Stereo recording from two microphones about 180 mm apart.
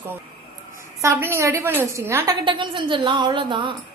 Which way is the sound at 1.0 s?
15° right (ahead or behind).